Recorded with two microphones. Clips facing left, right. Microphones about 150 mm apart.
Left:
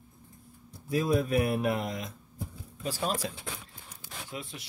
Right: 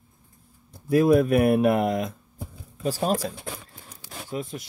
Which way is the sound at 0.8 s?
60° right (ahead or behind).